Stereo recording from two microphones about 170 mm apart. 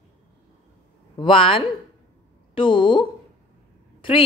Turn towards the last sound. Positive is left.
turn(degrees=30)  # may be behind; listen again after turning